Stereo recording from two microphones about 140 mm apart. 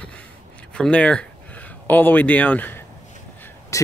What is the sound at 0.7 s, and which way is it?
Speech, 5° left (ahead or behind).